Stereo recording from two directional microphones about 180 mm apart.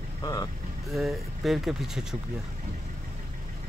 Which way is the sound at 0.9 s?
Centre (ahead or behind).